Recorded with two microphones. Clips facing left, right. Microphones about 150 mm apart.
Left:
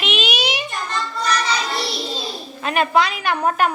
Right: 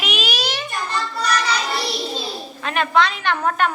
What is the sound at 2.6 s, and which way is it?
A woman's voice, 15° left (ahead or behind).